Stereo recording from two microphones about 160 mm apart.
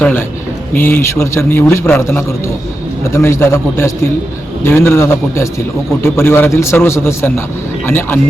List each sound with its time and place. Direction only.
0.0 s a man's voice: 10° left (ahead or behind)